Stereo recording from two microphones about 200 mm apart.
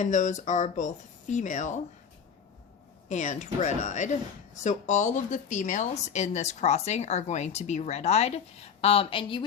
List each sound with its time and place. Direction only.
0.0 s speech: 35° left (ahead or behind)
3.1 s speech: 35° left (ahead or behind)